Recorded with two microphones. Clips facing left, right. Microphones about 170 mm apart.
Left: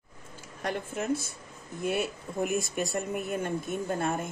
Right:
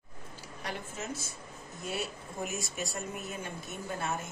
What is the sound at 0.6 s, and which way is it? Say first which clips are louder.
Speech: left 9 dB; 55° left (ahead or behind).